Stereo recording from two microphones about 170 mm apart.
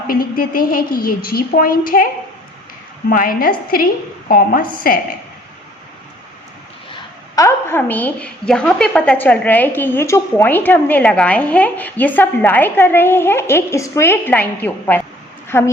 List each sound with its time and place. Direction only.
0.1 s a woman's voice: 60° left (ahead or behind)
3.1 s a woman's voice: 55° left (ahead or behind)
6.9 s a woman's voice: 20° left (ahead or behind)